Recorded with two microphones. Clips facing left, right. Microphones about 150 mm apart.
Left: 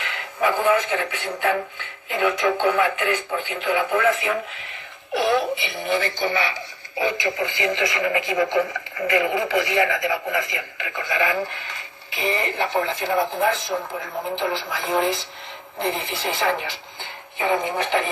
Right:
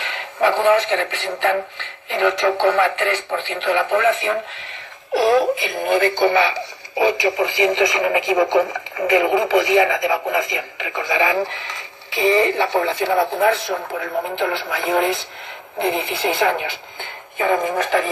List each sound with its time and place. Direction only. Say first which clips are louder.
0.0 s speech: right 4 dB; 30° right (ahead or behind)
3.5 s speech: right 3 dB; 75° right (ahead or behind)
4.1 s speech: right 3 dB; 30° right (ahead or behind); by 16.7 s 55° right (ahead or behind)
17.4 s speech: right 4 dB; 45° right (ahead or behind)